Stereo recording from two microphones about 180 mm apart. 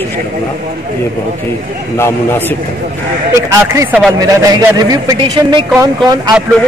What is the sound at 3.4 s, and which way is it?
A man's voice, 15° right (ahead or behind).